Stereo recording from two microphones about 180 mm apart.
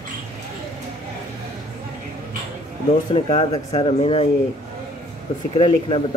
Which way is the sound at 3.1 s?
35° left (ahead or behind).